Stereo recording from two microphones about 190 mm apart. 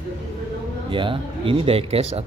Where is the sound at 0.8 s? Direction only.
25° right (ahead or behind).